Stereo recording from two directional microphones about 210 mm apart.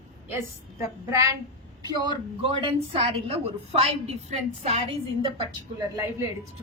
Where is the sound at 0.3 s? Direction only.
15° right (ahead or behind); by 4.9 s 30° right (ahead or behind).